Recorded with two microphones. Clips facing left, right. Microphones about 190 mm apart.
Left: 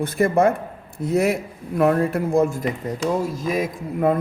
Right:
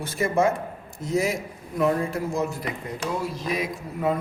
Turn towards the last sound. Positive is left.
turn(degrees=50)  # may be behind; listen again after turning